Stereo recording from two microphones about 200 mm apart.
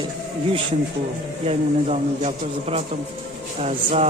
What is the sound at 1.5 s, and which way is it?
Speech, 30° right (ahead or behind).